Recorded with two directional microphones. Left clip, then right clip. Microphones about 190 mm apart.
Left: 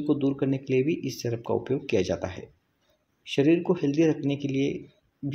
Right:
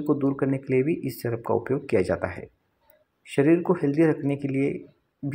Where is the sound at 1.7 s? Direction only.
Centre (ahead or behind).